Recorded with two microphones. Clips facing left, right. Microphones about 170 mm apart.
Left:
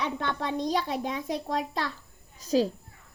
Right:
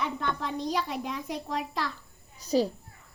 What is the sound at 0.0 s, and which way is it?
Speech, 75° left (ahead or behind).